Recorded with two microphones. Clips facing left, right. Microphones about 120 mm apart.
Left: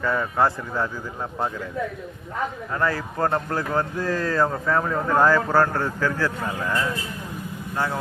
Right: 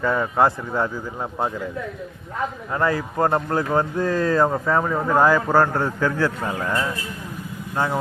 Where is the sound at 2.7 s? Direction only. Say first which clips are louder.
Right 4 dB; 20° right (ahead or behind).